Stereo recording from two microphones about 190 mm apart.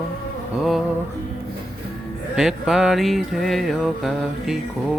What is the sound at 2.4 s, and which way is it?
Music, centre (ahead or behind).